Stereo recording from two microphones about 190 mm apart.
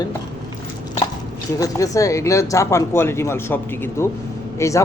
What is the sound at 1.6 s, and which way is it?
A man's voice, 15° left (ahead or behind).